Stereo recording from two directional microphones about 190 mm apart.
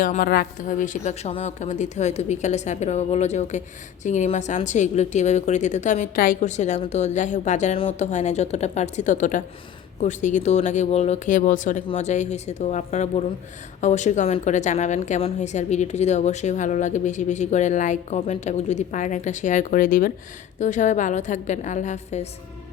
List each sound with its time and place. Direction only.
0.0 s a woman's voice: 45° left (ahead or behind)